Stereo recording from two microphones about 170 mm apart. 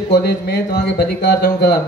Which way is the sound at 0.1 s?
70° left (ahead or behind).